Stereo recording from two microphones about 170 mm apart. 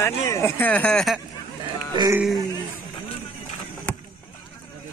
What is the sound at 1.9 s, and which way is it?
Speech, 25° right (ahead or behind).